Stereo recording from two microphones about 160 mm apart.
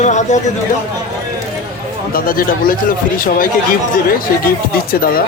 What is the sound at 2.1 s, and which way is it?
Speech, 65° left (ahead or behind).